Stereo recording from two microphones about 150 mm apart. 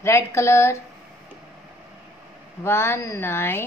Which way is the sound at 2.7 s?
15° left (ahead or behind).